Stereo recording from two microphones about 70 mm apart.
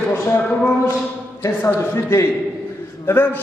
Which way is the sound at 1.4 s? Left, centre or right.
Left.